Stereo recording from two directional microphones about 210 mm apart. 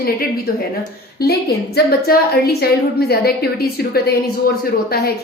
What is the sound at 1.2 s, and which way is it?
A woman's voice, 50° left (ahead or behind).